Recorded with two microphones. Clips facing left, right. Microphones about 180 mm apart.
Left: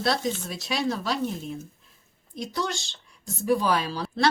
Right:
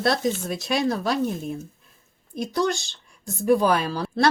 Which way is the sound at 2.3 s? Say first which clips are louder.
Right 6 dB; 50° right (ahead or behind).